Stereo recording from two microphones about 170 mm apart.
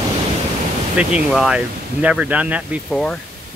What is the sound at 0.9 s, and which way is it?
Speech, 5° right (ahead or behind).